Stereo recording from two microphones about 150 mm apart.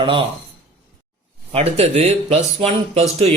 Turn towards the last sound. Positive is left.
turn(degrees=-45)  # may be behind; listen again after turning